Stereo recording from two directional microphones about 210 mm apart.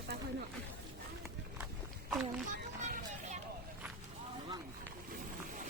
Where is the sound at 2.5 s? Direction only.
35° right (ahead or behind).